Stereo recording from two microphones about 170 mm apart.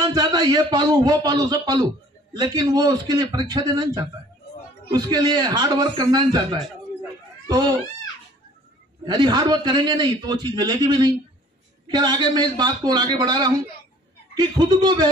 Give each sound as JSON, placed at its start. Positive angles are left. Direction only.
{"t": 0.0, "sound": "a man's voice", "side_deg": -25}
{"t": 9.0, "sound": "a man's voice", "side_deg": -25}